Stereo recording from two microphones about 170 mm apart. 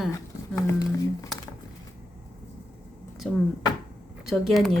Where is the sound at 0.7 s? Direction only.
20° left (ahead or behind).